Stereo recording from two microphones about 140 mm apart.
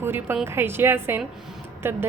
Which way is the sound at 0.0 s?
15° right (ahead or behind).